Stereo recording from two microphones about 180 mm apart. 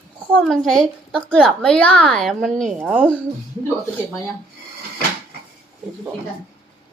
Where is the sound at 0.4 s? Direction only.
Centre (ahead or behind).